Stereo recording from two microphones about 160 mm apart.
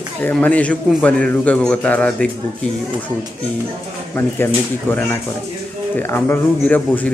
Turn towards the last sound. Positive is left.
turn(degrees=10)  # may be behind; listen again after turning